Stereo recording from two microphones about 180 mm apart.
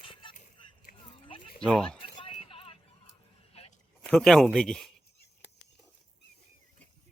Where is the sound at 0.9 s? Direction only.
50° left (ahead or behind).